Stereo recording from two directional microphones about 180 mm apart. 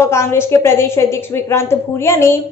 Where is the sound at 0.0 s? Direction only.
15° left (ahead or behind).